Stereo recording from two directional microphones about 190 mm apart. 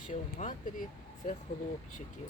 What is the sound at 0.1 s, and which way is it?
Speech, 40° left (ahead or behind).